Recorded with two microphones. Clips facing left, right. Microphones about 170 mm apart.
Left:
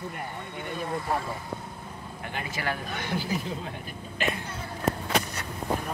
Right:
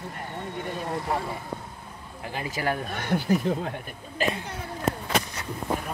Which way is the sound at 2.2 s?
35° right (ahead or behind).